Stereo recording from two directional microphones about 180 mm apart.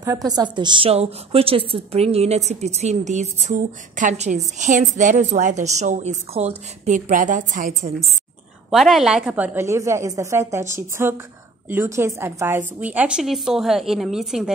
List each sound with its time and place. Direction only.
0.0 s a woman's voice: 20° right (ahead or behind); by 7.9 s 45° right (ahead or behind)
8.6 s a woman's voice: centre (ahead or behind)